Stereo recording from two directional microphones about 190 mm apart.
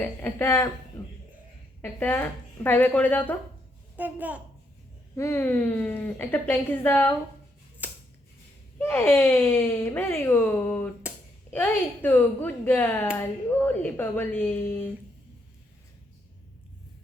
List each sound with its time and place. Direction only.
0.0 s a woman's voice: 10° left (ahead or behind)
1.0 s a sound: 15° left (ahead or behind)
1.8 s a woman's voice: 10° left (ahead or behind)
3.9 s a child's voice: 10° right (ahead or behind)
5.1 s a woman's voice: 15° left (ahead or behind)
7.8 s scissors: 10° right (ahead or behind)
8.8 s a woman's voice: 10° left (ahead or behind)
11.1 s a sound: 5° right (ahead or behind)
11.5 s a woman's voice: 10° left (ahead or behind)